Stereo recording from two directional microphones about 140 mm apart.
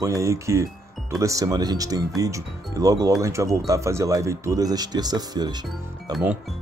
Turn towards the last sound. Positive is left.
turn(degrees=-25)  # may be behind; listen again after turning